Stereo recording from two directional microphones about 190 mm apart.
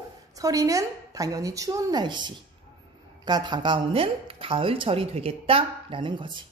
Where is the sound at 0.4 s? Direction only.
15° right (ahead or behind).